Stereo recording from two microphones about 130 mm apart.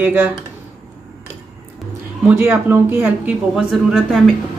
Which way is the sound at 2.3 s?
15° right (ahead or behind).